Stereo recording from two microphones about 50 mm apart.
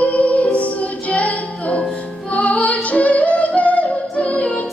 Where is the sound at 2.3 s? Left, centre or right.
Left.